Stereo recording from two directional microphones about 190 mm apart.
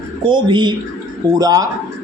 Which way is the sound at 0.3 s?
25° right (ahead or behind).